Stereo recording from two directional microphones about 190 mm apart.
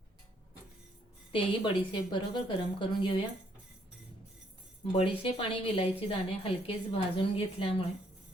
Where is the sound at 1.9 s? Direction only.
25° left (ahead or behind).